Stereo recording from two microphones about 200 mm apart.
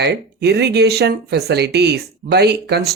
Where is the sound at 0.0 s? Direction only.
55° right (ahead or behind).